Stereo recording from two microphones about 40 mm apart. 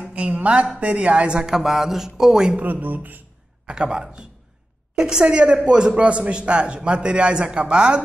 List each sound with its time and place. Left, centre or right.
0.1 s a sound: right
0.7 s a man's voice: right
1.5 s speech: centre
2.6 s speech: right
3.6 s a man's voice: right